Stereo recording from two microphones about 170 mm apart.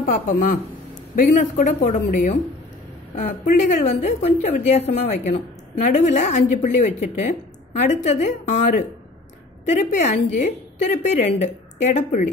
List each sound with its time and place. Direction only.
0.0 s a woman's voice: 50° left (ahead or behind)
3.2 s a woman's voice: 45° left (ahead or behind)